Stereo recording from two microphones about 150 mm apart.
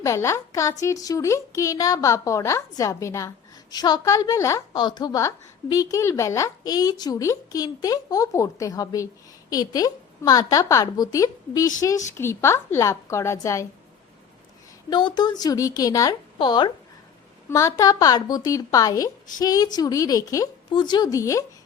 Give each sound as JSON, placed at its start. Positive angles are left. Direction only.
{"t": 0.0, "sound": "speech", "side_deg": 20}
{"t": 14.8, "sound": "speech", "side_deg": 30}